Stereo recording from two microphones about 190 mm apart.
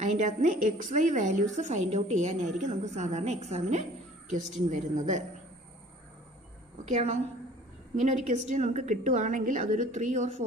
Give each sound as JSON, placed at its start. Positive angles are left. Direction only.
{"t": 0.0, "sound": "a woman's voice", "side_deg": -40}
{"t": 6.8, "sound": "a woman's voice", "side_deg": -35}